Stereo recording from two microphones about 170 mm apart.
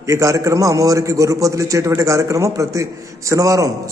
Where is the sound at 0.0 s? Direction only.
20° right (ahead or behind).